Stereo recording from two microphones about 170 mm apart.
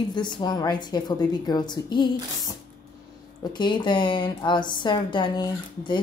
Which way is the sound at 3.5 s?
25° left (ahead or behind).